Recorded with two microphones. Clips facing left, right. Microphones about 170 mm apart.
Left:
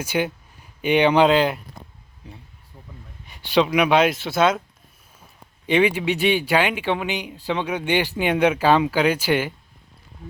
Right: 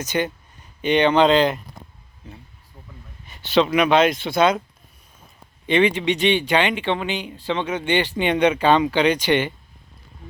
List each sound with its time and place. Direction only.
0.0 s speech: 10° left (ahead or behind)
3.2 s speech: 10° left (ahead or behind)
5.6 s speech: 10° left (ahead or behind)